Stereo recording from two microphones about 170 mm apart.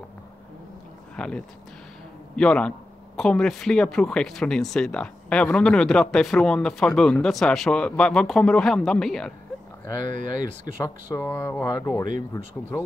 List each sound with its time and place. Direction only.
1.1 s speech: 5° left (ahead or behind)
10.0 s speech: 50° right (ahead or behind)
10.8 s speech: 20° left (ahead or behind)